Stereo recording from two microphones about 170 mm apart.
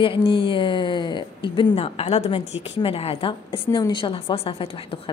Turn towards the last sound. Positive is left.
turn(degrees=35)  # may be behind; listen again after turning